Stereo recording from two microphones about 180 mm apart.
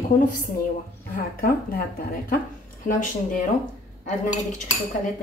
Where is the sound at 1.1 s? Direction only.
55° left (ahead or behind).